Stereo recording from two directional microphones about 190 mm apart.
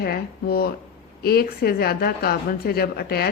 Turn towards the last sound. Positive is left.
turn(degrees=55)  # may be behind; listen again after turning